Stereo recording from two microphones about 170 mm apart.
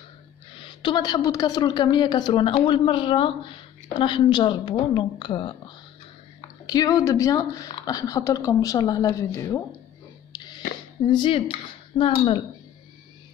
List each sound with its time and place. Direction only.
0.6 s a woman's voice: 30° left (ahead or behind)
6.6 s a woman's voice: 20° left (ahead or behind)
10.3 s a sound: 20° left (ahead or behind)
11.1 s a woman's voice: 30° left (ahead or behind)